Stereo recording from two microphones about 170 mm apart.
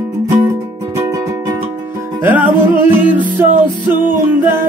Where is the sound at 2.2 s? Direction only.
10° right (ahead or behind).